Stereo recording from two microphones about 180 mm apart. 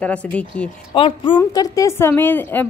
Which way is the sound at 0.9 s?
30° left (ahead or behind).